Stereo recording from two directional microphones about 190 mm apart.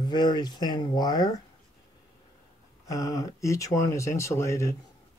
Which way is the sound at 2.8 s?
15° left (ahead or behind).